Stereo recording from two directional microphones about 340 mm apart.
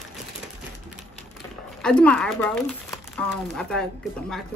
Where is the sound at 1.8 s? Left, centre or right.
Centre.